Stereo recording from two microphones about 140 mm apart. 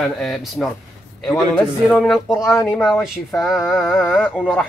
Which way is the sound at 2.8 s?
Centre (ahead or behind).